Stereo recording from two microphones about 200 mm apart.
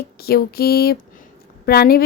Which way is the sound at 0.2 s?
50° left (ahead or behind).